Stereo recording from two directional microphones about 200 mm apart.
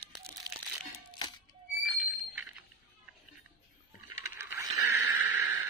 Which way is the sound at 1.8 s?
5° right (ahead or behind).